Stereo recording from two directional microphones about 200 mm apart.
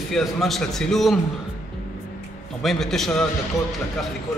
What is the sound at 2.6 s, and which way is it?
Speech, centre (ahead or behind).